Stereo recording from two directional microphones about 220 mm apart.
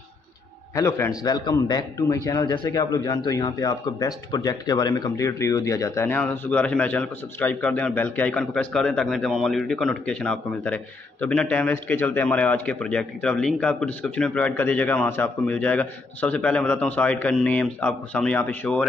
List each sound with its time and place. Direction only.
0.7 s speech: 15° left (ahead or behind)